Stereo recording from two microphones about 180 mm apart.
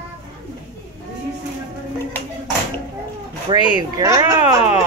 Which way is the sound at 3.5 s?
20° right (ahead or behind).